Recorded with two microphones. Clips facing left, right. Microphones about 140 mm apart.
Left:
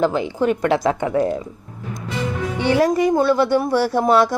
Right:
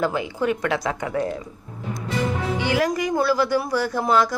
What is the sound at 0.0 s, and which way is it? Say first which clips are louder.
A woman's voice: left 4 dB; 30° left (ahead or behind).